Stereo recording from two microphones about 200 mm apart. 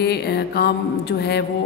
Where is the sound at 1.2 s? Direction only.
55° left (ahead or behind).